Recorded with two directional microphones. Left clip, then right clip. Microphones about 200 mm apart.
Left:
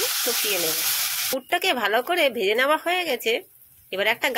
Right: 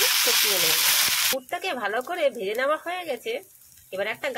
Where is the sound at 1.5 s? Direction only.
20° left (ahead or behind).